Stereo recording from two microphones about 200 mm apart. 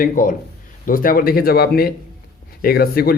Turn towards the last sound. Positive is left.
turn(degrees=50)  # may be behind; listen again after turning